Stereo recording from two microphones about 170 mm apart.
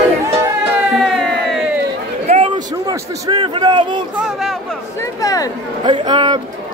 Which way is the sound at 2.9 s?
25° right (ahead or behind).